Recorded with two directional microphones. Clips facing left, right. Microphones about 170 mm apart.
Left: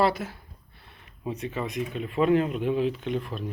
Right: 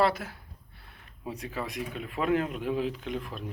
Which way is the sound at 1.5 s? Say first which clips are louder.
Left 3 dB; 5° right (ahead or behind).